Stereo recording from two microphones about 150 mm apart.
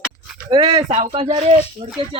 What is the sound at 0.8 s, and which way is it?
Speech, 45° right (ahead or behind).